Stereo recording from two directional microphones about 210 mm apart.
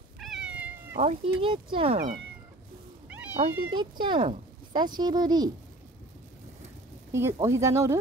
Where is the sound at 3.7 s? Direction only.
20° right (ahead or behind).